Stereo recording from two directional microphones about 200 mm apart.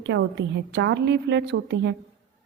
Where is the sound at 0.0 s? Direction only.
65° right (ahead or behind).